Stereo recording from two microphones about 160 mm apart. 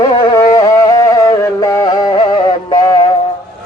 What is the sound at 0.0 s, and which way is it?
Music, 20° left (ahead or behind).